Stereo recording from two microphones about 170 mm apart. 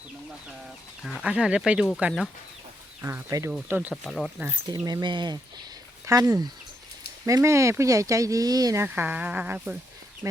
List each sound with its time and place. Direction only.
1.0 s speech: 5° right (ahead or behind)
3.0 s speech: 15° right (ahead or behind)
3.5 s speech: 10° right (ahead or behind)
4.4 s speech: 15° right (ahead or behind)
4.9 s speech: 25° right (ahead or behind); by 9.7 s 10° right (ahead or behind)